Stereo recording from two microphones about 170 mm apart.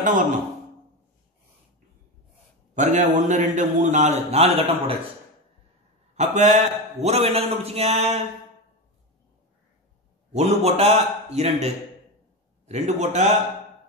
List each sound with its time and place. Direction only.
2.7 s a man's voice: 45° right (ahead or behind)
6.1 s a man's voice: 45° right (ahead or behind)
10.3 s a man's voice: 40° right (ahead or behind)